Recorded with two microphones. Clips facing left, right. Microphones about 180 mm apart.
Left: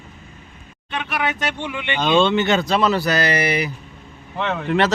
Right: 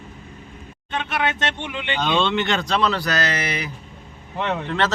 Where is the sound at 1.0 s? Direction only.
25° right (ahead or behind).